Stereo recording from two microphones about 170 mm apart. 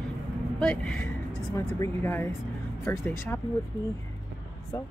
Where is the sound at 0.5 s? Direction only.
5° left (ahead or behind).